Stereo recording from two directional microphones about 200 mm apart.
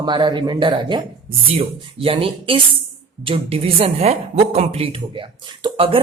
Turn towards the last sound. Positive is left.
turn(degrees=-25)  # may be behind; listen again after turning